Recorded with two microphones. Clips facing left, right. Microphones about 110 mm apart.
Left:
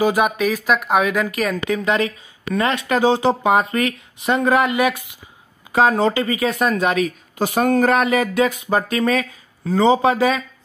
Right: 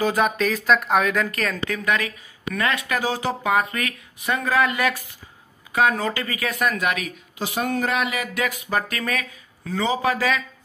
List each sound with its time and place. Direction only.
0.0 s speech: 10° left (ahead or behind)
1.9 s speech: 25° left (ahead or behind)
5.7 s speech: 30° left (ahead or behind)
7.3 s speech: 50° left (ahead or behind); by 10.4 s 25° left (ahead or behind)